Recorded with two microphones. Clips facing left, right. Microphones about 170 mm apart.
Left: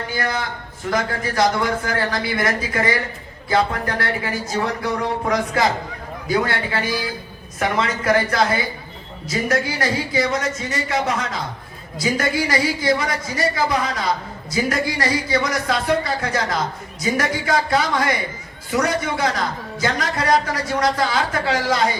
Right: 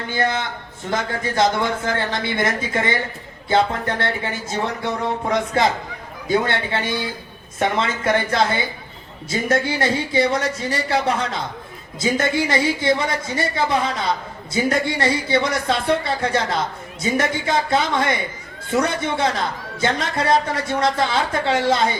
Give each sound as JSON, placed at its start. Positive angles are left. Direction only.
{"t": 0.1, "sound": "speech", "side_deg": -25}